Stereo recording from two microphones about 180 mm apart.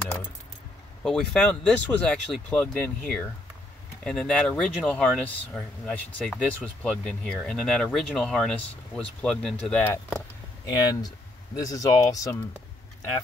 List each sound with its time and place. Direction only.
1.0 s speech: centre (ahead or behind)
10.7 s speech: 25° left (ahead or behind)